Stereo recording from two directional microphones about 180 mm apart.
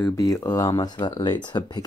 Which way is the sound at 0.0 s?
20° left (ahead or behind).